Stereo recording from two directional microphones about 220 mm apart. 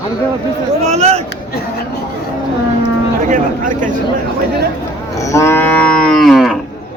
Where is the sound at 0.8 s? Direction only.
30° right (ahead or behind).